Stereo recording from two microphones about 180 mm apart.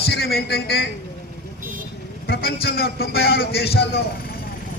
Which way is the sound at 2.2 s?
60° left (ahead or behind).